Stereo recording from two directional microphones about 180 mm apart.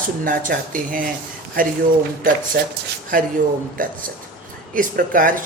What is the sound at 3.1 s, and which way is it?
Speech, 50° right (ahead or behind).